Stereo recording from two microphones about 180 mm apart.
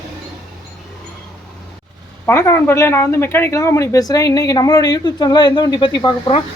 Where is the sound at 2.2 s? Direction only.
15° left (ahead or behind).